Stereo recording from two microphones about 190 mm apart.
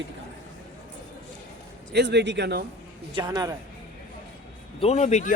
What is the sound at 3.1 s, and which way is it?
Speech, 20° right (ahead or behind).